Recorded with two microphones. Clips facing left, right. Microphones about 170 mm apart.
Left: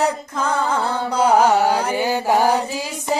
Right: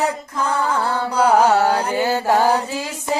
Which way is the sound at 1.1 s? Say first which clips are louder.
Even; 20° left (ahead or behind).